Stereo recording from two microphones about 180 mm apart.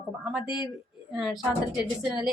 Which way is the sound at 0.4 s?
25° left (ahead or behind).